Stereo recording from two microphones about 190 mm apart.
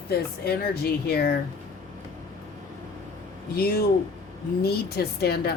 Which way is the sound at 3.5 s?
55° left (ahead or behind).